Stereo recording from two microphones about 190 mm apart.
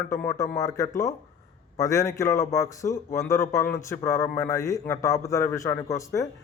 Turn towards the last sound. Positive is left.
turn(degrees=15)  # may be behind; listen again after turning